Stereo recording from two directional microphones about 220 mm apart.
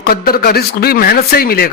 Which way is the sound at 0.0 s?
45° left (ahead or behind).